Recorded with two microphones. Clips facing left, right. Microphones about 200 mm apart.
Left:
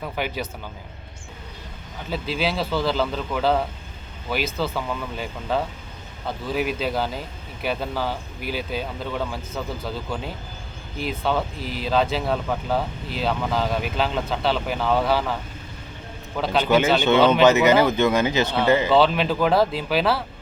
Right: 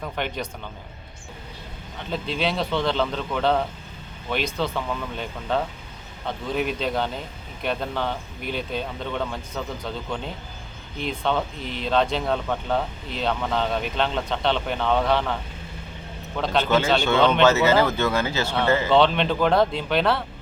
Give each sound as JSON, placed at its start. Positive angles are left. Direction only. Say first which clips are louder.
{"t": 0.0, "sound": "a man's voice", "louder": "left 1 dB", "side_deg": 5}
{"t": 2.0, "sound": "speech", "louder": "left 1 dB", "side_deg": 5}
{"t": 16.4, "sound": "speech", "louder": "left 1 dB", "side_deg": 5}
{"t": 16.6, "sound": "speech", "louder": "left 4 dB", "side_deg": 15}
{"t": 18.9, "sound": "speech", "louder": "left 1 dB", "side_deg": 5}